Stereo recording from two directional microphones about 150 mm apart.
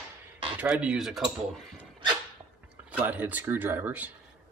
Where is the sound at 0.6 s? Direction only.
10° right (ahead or behind).